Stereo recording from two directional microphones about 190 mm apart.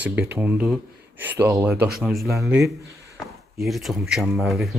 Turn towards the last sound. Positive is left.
turn(degrees=0)  # may be behind; listen again after turning